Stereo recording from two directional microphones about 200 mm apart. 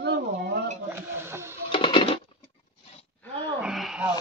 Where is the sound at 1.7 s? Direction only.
25° left (ahead or behind).